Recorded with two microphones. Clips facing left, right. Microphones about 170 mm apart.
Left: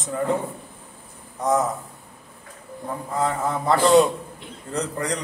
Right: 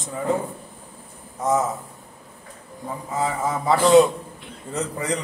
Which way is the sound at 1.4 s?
Centre (ahead or behind).